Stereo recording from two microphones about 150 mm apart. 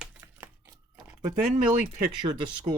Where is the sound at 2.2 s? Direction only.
30° right (ahead or behind).